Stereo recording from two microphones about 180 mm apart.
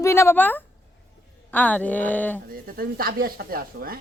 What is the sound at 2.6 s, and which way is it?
Speech, 55° right (ahead or behind).